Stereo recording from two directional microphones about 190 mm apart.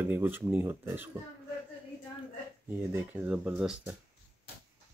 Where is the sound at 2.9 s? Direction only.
10° right (ahead or behind).